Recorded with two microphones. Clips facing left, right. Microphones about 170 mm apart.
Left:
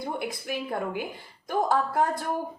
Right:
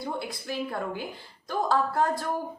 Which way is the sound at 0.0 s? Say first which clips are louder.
Left 1 dB; 20° left (ahead or behind).